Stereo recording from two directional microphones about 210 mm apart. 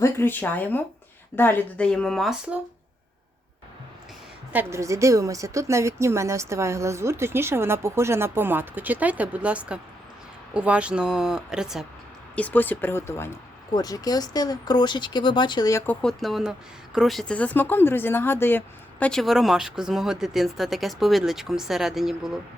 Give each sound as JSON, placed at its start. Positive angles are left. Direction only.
{"t": 0.0, "sound": "speech", "side_deg": 10}
{"t": 4.5, "sound": "a woman's voice", "side_deg": -15}
{"t": 12.4, "sound": "speech", "side_deg": 10}
{"t": 16.0, "sound": "speech", "side_deg": 0}